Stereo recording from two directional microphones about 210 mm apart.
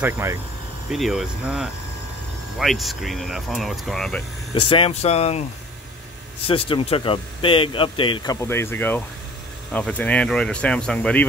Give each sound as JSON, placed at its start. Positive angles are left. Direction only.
{"t": 0.0, "sound": "speech", "side_deg": -10}
{"t": 0.8, "sound": "speech", "side_deg": 0}
{"t": 4.6, "sound": "speech", "side_deg": 25}
{"t": 6.4, "sound": "speech", "side_deg": 25}